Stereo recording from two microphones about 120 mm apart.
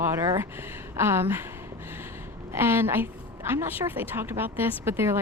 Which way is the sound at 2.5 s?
20° right (ahead or behind).